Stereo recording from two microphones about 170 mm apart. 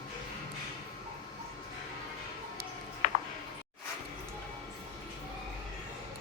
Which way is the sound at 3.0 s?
45° left (ahead or behind).